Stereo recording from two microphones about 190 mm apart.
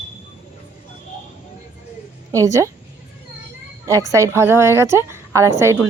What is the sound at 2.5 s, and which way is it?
Speech, 15° right (ahead or behind).